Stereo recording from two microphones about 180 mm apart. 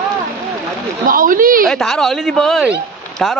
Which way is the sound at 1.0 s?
50° right (ahead or behind).